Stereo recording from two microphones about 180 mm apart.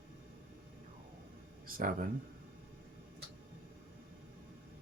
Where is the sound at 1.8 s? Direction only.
50° right (ahead or behind).